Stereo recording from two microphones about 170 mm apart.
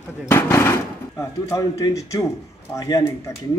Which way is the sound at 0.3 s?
15° left (ahead or behind).